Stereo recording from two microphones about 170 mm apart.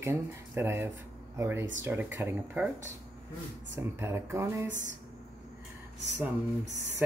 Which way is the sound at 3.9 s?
15° right (ahead or behind).